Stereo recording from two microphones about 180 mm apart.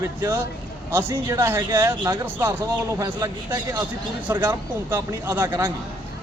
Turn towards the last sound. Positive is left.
turn(degrees=-15)  # may be behind; listen again after turning